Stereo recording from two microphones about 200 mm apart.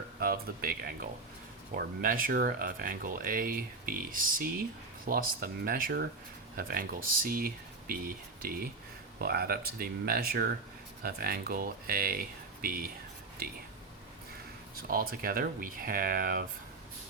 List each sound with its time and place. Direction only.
0.2 s speech: 50° right (ahead or behind)
14.8 s speech: 45° right (ahead or behind)